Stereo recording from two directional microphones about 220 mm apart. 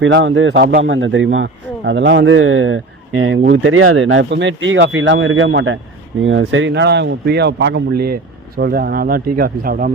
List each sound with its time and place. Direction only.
0.0 s a man's voice: 55° right (ahead or behind); by 9.9 s 40° right (ahead or behind)